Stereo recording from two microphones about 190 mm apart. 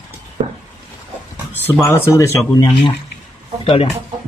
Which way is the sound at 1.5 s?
10° left (ahead or behind).